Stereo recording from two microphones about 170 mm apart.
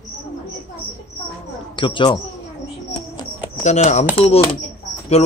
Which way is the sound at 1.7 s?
30° left (ahead or behind).